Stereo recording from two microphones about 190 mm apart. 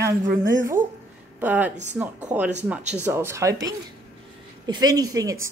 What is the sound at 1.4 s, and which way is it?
A woman's voice, 10° right (ahead or behind).